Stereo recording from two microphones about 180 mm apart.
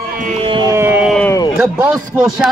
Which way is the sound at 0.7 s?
10° right (ahead or behind).